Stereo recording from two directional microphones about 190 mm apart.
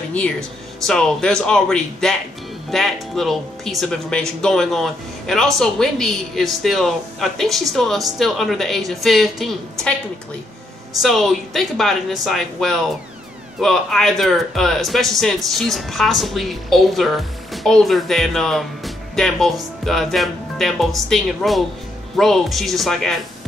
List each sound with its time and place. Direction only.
0.1 s speech: 5° left (ahead or behind)
11.0 s speech: centre (ahead or behind)